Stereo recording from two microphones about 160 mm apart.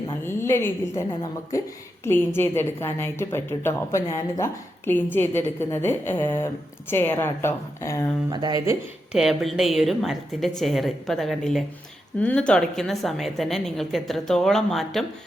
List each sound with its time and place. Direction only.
0.3 s a woman's voice: 15° left (ahead or behind)
8.3 s speech: 25° right (ahead or behind)
9.1 s a woman's voice: centre (ahead or behind)